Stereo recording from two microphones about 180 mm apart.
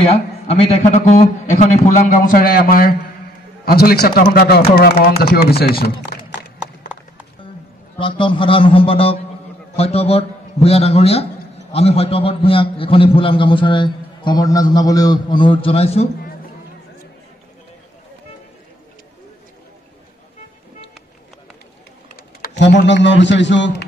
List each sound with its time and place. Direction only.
0.1 s a man's voice: 35° left (ahead or behind); by 5.7 s 60° left (ahead or behind)
8.0 s a man's voice: 25° left (ahead or behind)
22.1 s typing: 65° left (ahead or behind)
22.8 s a man's voice: 85° left